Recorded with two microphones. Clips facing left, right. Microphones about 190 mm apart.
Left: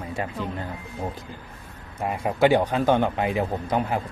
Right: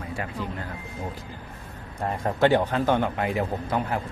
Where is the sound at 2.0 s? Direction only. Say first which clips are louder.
Left 1 dB; 10° left (ahead or behind).